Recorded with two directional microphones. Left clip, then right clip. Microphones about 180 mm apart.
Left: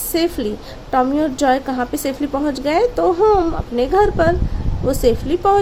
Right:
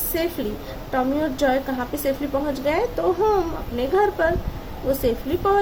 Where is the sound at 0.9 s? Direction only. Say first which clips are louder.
Left 6 dB; 55° left (ahead or behind).